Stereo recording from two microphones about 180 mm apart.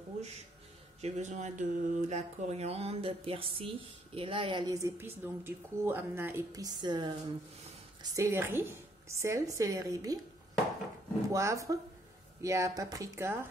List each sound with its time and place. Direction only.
1.0 s mantra: 40° right (ahead or behind)
8.0 s a woman's voice: 20° right (ahead or behind)
11.3 s a woman's voice: 15° right (ahead or behind)